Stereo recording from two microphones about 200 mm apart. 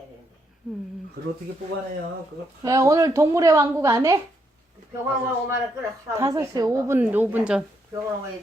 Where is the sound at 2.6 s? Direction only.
15° right (ahead or behind).